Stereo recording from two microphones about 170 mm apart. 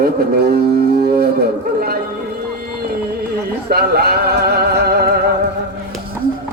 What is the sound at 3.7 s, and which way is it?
Music, 70° right (ahead or behind).